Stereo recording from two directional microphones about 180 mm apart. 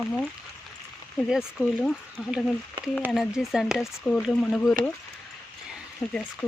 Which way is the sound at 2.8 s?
25° right (ahead or behind).